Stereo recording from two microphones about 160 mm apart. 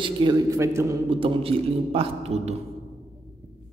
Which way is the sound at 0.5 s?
15° right (ahead or behind).